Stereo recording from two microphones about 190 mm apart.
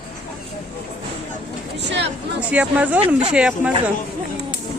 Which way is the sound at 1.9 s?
65° right (ahead or behind).